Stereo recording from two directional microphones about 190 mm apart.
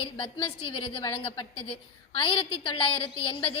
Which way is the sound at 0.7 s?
25° left (ahead or behind).